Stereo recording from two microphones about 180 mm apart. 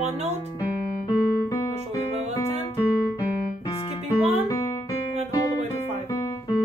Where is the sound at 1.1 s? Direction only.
20° left (ahead or behind).